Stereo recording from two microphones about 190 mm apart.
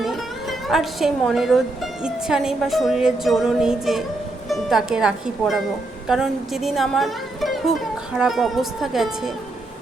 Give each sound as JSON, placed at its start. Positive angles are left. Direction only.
{"t": 0.0, "sound": "speech", "side_deg": 0}